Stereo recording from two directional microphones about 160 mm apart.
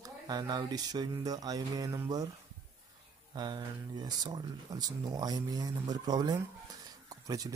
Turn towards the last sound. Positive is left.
turn(degrees=-25)  # may be behind; listen again after turning